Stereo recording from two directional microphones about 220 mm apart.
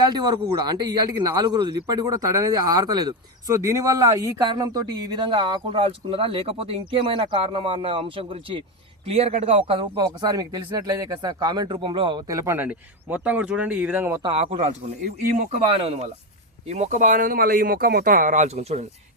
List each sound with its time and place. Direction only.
0.0 s speech: 20° right (ahead or behind)
14.5 s speech: 40° right (ahead or behind)
15.6 s speech: 25° right (ahead or behind)